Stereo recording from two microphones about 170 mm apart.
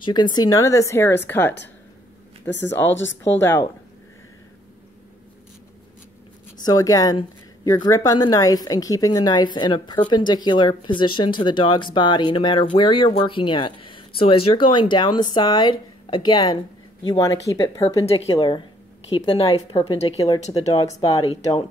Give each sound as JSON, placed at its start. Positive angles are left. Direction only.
{"t": 0.0, "sound": "a woman's voice", "side_deg": 25}
{"t": 2.9, "sound": "speech", "side_deg": 90}
{"t": 3.3, "sound": "speech", "side_deg": 15}
{"t": 6.6, "sound": "a woman's voice", "side_deg": 20}
{"t": 17.8, "sound": "a woman's voice", "side_deg": 35}
{"t": 20.2, "sound": "a woman's voice", "side_deg": 20}